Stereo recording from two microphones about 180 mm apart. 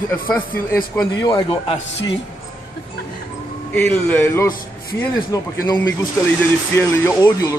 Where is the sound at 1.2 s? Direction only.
25° left (ahead or behind).